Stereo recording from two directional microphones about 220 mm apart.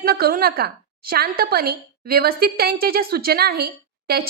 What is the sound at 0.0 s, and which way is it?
A woman's voice, 45° right (ahead or behind).